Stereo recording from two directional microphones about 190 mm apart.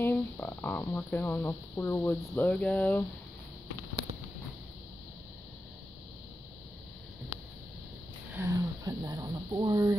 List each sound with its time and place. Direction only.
0.0 s speech: 10° left (ahead or behind)
8.3 s speech: 15° right (ahead or behind)